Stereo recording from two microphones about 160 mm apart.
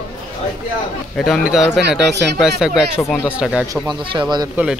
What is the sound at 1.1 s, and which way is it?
Speech, centre (ahead or behind).